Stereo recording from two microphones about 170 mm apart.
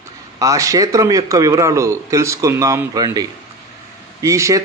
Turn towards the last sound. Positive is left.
turn(degrees=-20)  # may be behind; listen again after turning